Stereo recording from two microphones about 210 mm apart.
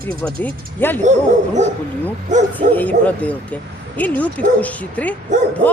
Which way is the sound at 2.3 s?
35° right (ahead or behind).